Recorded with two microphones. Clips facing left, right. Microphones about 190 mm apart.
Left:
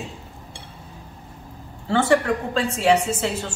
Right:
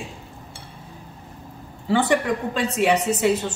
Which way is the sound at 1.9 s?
15° right (ahead or behind).